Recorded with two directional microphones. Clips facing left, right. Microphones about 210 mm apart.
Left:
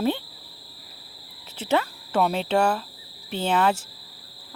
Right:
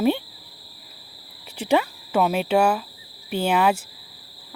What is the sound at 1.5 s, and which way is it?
Speech, 15° right (ahead or behind).